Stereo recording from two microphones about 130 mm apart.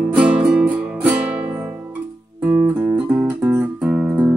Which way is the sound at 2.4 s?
15° right (ahead or behind).